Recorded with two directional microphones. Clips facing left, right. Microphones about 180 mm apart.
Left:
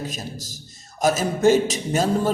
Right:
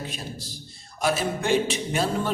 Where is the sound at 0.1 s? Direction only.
40° left (ahead or behind).